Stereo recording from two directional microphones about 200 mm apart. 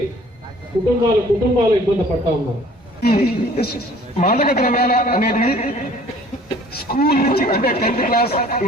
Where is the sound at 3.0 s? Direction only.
50° left (ahead or behind).